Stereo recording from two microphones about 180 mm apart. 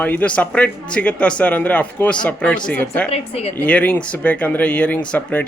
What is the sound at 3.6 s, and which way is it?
A man's voice, 10° left (ahead or behind).